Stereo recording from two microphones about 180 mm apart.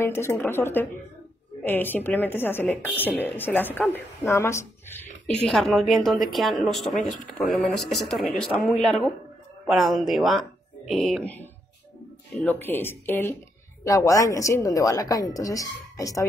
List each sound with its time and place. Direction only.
0.0 s a woman's voice: 15° left (ahead or behind)
5.4 s speech: centre (ahead or behind)
12.4 s a woman's voice: 10° left (ahead or behind)